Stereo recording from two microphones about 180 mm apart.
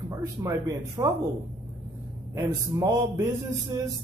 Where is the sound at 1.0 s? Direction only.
25° right (ahead or behind).